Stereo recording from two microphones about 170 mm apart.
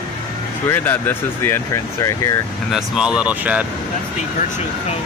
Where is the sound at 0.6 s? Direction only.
10° left (ahead or behind).